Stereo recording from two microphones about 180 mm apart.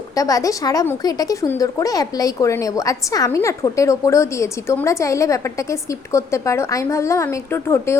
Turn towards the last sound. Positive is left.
turn(degrees=15)  # may be behind; listen again after turning